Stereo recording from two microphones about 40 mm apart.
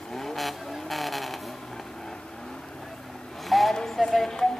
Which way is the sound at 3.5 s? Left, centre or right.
Centre.